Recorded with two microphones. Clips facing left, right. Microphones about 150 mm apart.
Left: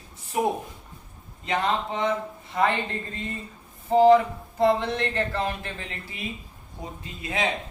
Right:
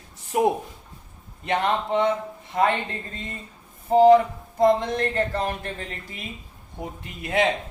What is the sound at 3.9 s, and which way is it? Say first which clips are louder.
Music: right 2 dB; 45° right (ahead or behind).